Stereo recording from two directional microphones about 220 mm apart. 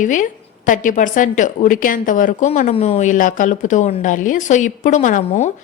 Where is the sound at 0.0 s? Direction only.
35° left (ahead or behind).